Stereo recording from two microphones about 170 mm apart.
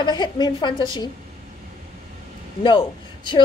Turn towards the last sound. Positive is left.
turn(degrees=30)  # may be behind; listen again after turning